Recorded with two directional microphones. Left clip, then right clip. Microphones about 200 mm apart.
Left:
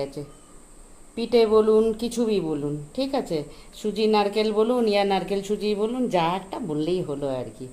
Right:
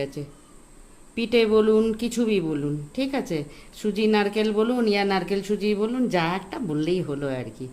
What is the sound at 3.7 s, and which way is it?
Speech, 90° right.